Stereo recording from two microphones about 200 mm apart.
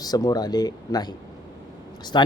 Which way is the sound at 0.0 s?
20° left (ahead or behind).